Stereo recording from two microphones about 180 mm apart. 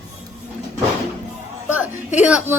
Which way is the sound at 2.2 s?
10° right (ahead or behind).